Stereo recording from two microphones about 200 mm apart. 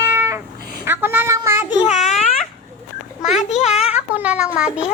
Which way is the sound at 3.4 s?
35° left (ahead or behind).